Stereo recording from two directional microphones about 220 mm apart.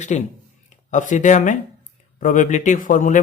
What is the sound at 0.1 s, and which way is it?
Speech, 30° left (ahead or behind).